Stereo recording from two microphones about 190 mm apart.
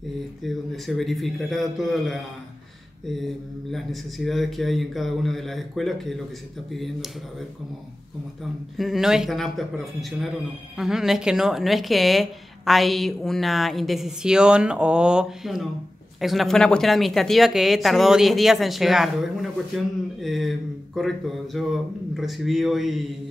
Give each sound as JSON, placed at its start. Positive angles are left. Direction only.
{"t": 0.4, "sound": "a woman's voice", "side_deg": 0}
{"t": 3.7, "sound": "a woman's voice", "side_deg": 0}
{"t": 8.7, "sound": "a woman's voice", "side_deg": 0}